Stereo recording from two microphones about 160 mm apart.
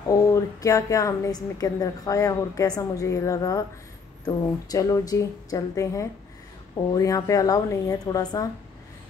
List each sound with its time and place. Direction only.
0.1 s a woman's voice: 20° left (ahead or behind)